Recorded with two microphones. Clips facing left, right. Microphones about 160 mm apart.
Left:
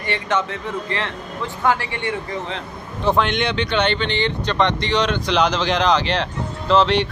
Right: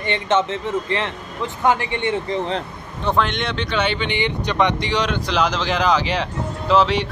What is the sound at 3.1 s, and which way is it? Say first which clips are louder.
Speech: left 2 dB; centre (ahead or behind).